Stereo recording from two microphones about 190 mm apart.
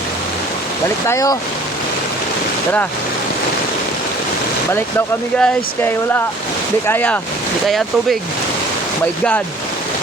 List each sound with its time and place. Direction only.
1.0 s speech: 15° left (ahead or behind)
4.7 s speech: 10° left (ahead or behind)